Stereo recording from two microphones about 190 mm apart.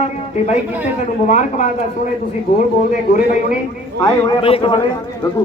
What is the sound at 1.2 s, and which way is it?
Speech, 40° left (ahead or behind).